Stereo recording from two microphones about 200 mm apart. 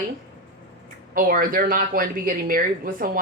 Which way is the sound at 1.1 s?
45° right (ahead or behind).